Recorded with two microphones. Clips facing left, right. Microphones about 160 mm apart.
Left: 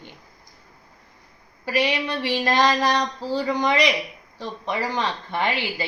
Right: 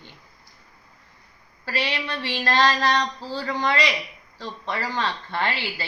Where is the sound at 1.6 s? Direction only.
15° left (ahead or behind).